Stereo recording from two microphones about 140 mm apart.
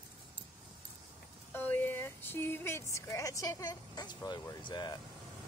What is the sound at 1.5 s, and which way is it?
Speech, 15° left (ahead or behind).